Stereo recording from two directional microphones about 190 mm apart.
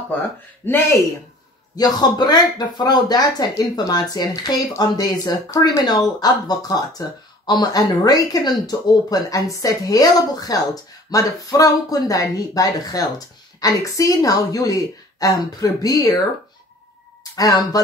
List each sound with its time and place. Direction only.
0.7 s speech: 10° left (ahead or behind)
17.2 s speech: 20° left (ahead or behind)